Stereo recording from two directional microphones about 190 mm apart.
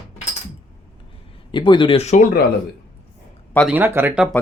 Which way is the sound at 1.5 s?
25° left (ahead or behind).